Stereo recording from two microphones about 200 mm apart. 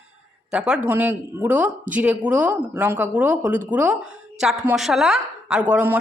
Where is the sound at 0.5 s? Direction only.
5° right (ahead or behind).